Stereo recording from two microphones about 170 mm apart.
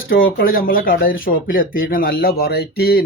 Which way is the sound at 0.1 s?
60° left (ahead or behind).